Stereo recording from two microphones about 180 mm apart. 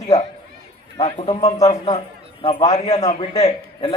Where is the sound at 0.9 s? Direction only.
35° left (ahead or behind).